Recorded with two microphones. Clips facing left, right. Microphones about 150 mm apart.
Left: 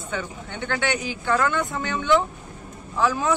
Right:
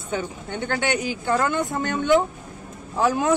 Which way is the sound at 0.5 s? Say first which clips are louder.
Right 1 dB; 45° right (ahead or behind).